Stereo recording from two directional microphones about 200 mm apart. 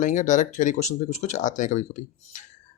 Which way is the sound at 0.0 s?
40° left (ahead or behind).